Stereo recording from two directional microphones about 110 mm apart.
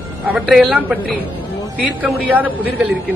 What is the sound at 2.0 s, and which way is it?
Speech, 10° right (ahead or behind).